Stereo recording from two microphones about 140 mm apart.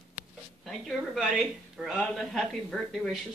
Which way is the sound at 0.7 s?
Centre (ahead or behind).